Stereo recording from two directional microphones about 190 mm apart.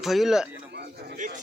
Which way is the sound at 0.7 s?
60° right (ahead or behind).